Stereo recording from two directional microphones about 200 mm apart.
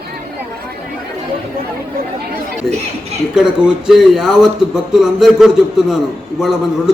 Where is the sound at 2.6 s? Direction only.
Centre (ahead or behind).